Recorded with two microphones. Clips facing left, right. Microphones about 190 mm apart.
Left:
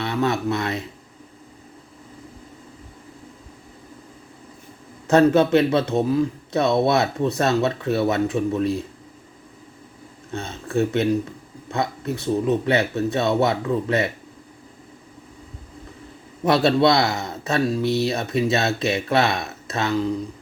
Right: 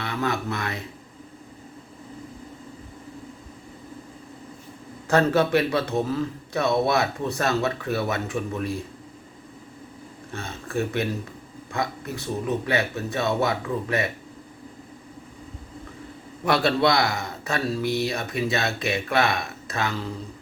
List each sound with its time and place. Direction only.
0.0 s speech: 20° left (ahead or behind)
5.0 s a man's voice: 20° left (ahead or behind)
10.3 s a man's voice: 20° left (ahead or behind)
16.5 s a man's voice: 25° left (ahead or behind)